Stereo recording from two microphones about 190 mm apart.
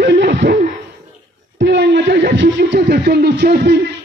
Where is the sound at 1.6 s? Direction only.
65° right (ahead or behind).